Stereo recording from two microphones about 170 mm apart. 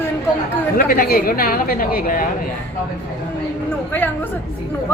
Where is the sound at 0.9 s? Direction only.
60° left (ahead or behind).